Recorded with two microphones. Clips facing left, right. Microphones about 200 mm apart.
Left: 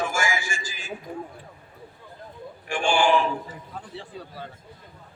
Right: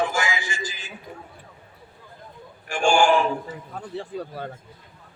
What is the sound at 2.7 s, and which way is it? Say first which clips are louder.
A man's voice: right 2 dB; 45° right (ahead or behind).